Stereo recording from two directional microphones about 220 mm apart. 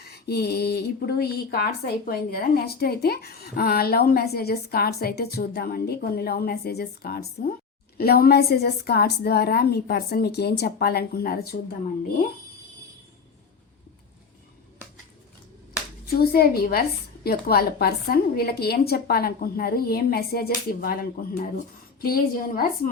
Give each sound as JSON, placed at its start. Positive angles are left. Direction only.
{"t": 0.0, "sound": "speech", "side_deg": 45}
{"t": 16.0, "sound": "a woman's voice", "side_deg": 45}